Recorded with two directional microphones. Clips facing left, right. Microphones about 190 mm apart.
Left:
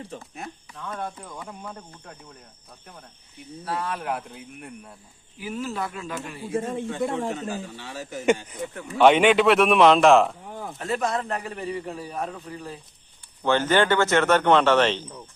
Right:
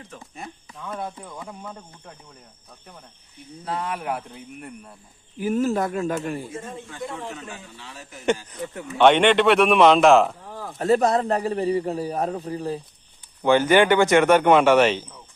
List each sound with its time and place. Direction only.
0.3 s speech: 5° right (ahead or behind)
3.6 s speech: 20° right (ahead or behind); by 4.9 s centre (ahead or behind)
5.4 s speech: 45° right (ahead or behind)
6.5 s a man's voice: 60° left (ahead or behind)
7.0 s a man's voice: 45° left (ahead or behind)
8.4 s speech: 10° left (ahead or behind)
10.5 s a sound: 20° left (ahead or behind)
10.8 s a man's voice: 40° right (ahead or behind)
13.4 s speech: 10° right (ahead or behind)